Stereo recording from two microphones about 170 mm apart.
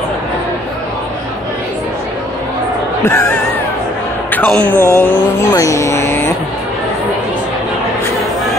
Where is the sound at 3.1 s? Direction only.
15° left (ahead or behind).